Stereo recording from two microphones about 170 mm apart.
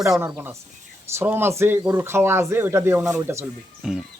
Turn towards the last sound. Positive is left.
turn(degrees=-5)  # may be behind; listen again after turning